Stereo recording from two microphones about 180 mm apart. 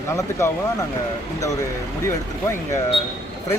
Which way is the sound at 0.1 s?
15° left (ahead or behind).